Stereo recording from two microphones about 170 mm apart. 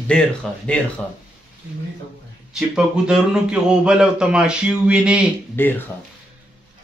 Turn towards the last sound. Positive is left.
turn(degrees=10)  # may be behind; listen again after turning